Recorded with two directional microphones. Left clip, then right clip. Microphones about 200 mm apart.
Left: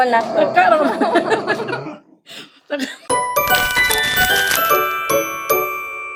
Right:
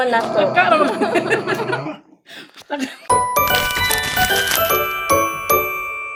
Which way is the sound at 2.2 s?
35° left (ahead or behind).